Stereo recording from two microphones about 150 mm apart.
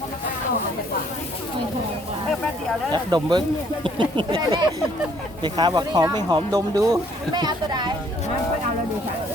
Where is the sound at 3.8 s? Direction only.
35° right (ahead or behind).